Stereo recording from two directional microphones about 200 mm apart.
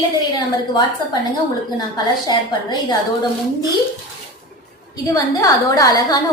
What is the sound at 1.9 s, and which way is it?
A woman's voice, 20° left (ahead or behind).